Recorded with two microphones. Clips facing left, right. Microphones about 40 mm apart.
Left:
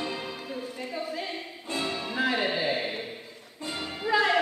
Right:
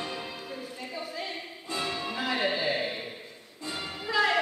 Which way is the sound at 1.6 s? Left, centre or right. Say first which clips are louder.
Left 2 dB; left.